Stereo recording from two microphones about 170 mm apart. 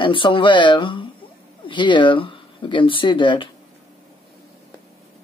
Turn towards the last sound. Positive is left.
turn(degrees=30)  # may be behind; listen again after turning